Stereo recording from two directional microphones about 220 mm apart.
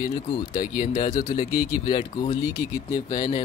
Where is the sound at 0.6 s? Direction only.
40° left (ahead or behind).